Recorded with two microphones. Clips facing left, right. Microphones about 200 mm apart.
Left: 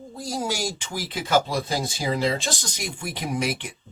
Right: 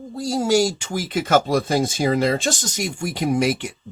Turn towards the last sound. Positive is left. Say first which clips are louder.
# right 7 dB
turn(degrees=-45)  # may be behind; listen again after turning